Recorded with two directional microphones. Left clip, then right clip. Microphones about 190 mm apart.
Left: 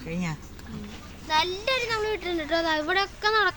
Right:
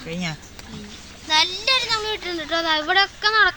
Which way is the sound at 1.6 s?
10° left (ahead or behind).